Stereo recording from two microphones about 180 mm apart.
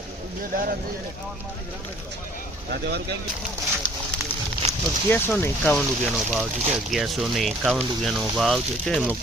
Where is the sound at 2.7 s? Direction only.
65° right (ahead or behind).